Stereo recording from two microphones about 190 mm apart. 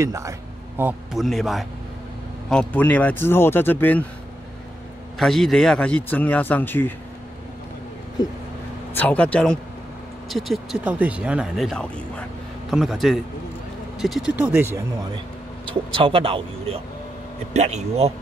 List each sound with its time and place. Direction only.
0.0 s speech: 15° right (ahead or behind)
1.1 s speech: centre (ahead or behind)
5.2 s speech: centre (ahead or behind)
8.9 s speech: 5° left (ahead or behind); by 14.8 s 10° right (ahead or behind)
15.7 s speech: 25° right (ahead or behind)